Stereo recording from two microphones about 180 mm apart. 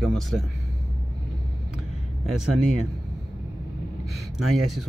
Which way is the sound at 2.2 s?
Centre (ahead or behind).